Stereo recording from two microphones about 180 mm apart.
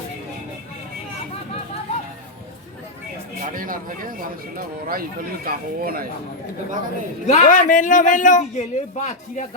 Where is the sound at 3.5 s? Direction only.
50° right (ahead or behind).